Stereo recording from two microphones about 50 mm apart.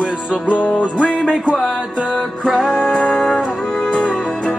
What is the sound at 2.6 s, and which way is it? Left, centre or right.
Music, centre.